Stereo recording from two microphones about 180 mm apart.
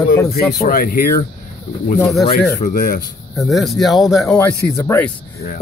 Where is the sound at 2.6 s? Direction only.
50° left (ahead or behind).